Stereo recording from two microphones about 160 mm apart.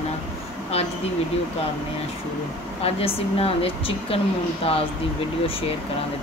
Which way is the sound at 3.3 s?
35° left (ahead or behind).